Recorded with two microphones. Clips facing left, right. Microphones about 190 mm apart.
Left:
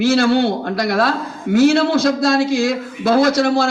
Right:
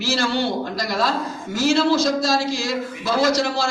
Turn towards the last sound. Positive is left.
turn(degrees=55)  # may be behind; listen again after turning